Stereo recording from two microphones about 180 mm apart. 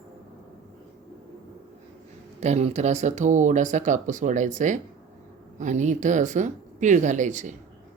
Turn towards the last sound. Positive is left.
turn(degrees=-45)  # may be behind; listen again after turning